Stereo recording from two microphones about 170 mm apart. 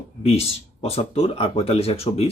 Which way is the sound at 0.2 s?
35° left (ahead or behind).